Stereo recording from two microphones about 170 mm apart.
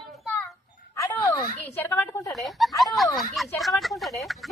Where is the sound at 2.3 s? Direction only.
Centre (ahead or behind).